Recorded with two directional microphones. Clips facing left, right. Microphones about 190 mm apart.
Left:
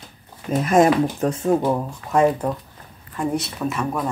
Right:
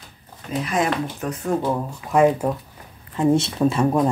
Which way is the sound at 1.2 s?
25° left (ahead or behind).